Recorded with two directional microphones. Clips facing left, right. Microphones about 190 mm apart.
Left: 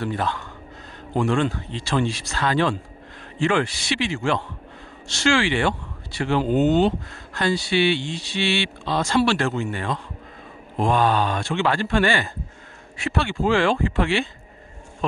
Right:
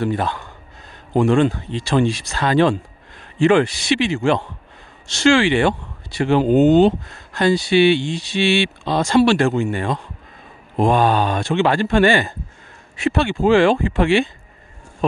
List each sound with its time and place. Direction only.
0.0 s speech: 15° right (ahead or behind)